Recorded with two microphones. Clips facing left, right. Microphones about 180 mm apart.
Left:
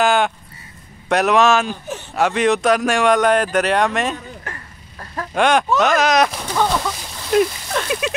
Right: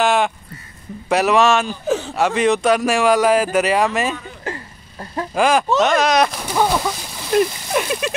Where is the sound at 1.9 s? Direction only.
90° right.